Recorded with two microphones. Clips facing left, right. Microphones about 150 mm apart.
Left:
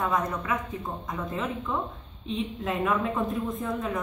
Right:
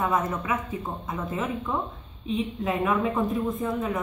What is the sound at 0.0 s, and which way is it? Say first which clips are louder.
Speech: right 2 dB; 5° right (ahead or behind).